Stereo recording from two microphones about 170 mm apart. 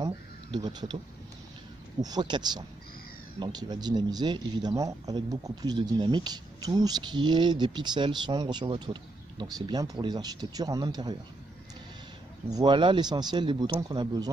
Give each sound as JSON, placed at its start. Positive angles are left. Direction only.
{"t": 0.0, "sound": "a sound", "side_deg": -25}
{"t": 2.0, "sound": "speech", "side_deg": -25}
{"t": 12.4, "sound": "speech", "side_deg": -25}